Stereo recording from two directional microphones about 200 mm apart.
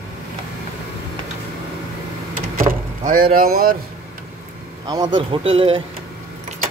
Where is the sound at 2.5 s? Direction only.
45° right (ahead or behind).